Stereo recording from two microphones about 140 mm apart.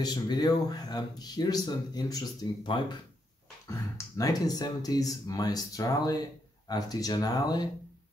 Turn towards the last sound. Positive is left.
turn(degrees=30)  # may be behind; listen again after turning